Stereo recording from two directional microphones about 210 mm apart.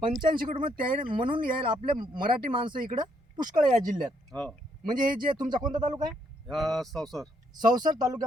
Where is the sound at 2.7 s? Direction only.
40° right (ahead or behind).